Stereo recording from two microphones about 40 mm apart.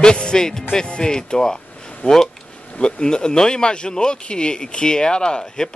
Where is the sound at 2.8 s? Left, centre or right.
Left.